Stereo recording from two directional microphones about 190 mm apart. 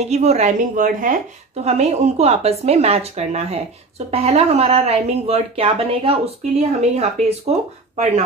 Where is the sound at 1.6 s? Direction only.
35° right (ahead or behind).